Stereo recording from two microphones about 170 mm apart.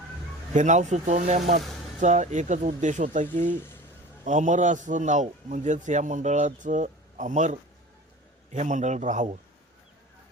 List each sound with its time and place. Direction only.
0.5 s a man's voice: 45° right (ahead or behind)